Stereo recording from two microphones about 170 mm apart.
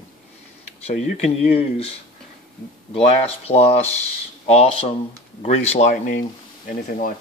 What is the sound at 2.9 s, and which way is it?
Speech, 40° left (ahead or behind).